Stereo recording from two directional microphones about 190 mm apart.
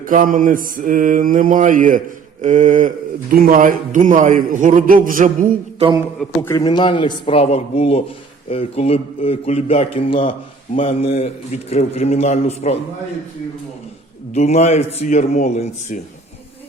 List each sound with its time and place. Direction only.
0.0 s a man's voice: 45° right (ahead or behind)
2.4 s mantra: 40° right (ahead or behind)
3.3 s a man's voice: 50° right (ahead or behind)
6.1 s a man's voice: 15° left (ahead or behind); by 12.7 s 35° left (ahead or behind)
14.3 s a man's voice: 35° left (ahead or behind)